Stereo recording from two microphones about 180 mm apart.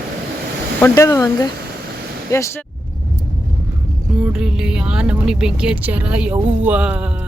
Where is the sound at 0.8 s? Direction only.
15° left (ahead or behind).